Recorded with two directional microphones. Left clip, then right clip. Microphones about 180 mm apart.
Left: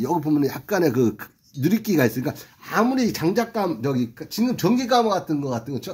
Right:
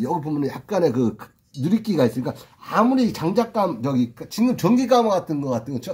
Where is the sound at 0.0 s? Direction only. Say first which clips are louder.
Left 2 dB; 25° left (ahead or behind).